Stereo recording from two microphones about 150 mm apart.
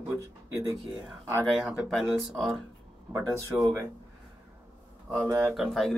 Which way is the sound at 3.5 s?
10° right (ahead or behind).